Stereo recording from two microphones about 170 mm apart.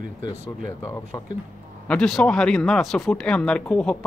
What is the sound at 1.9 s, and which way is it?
Speech, 5° left (ahead or behind).